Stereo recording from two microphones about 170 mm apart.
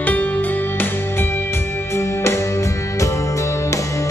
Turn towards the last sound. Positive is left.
turn(degrees=15)  # may be behind; listen again after turning